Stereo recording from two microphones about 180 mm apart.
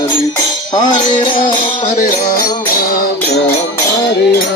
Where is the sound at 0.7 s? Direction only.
25° left (ahead or behind).